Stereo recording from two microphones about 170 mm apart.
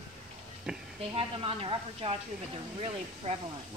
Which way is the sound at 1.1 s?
35° right (ahead or behind).